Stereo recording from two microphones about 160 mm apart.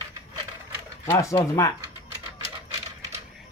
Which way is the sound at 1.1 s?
20° left (ahead or behind).